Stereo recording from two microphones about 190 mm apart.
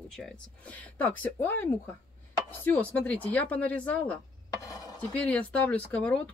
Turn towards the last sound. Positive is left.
turn(degrees=5)  # may be behind; listen again after turning